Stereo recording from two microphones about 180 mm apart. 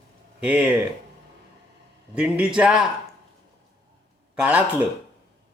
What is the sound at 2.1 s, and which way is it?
Speech, 5° right (ahead or behind).